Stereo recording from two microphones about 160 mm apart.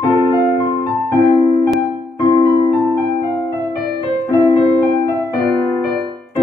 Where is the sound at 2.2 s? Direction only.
25° left (ahead or behind).